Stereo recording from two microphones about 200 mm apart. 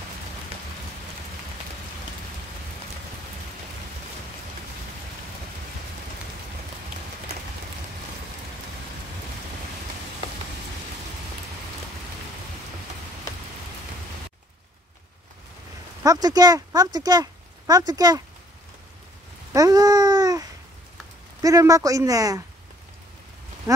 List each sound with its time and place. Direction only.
0.5 s rain on surface: 30° right (ahead or behind)
16.0 s speech: 20° right (ahead or behind)
19.5 s babbling: 20° right (ahead or behind)
21.4 s speech: 15° right (ahead or behind)